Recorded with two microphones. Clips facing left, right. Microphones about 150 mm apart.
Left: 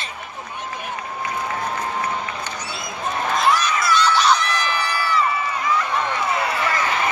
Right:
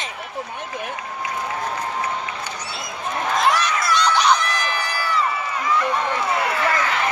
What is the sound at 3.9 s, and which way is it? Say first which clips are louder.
Crowd: even; 15° right (ahead or behind).